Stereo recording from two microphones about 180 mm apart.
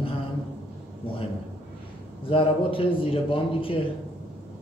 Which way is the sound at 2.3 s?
30° left (ahead or behind).